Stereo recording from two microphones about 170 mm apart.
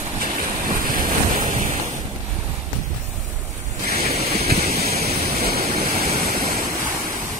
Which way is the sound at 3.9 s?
40° right (ahead or behind).